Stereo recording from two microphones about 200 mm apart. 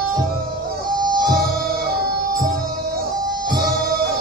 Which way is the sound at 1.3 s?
50° right (ahead or behind).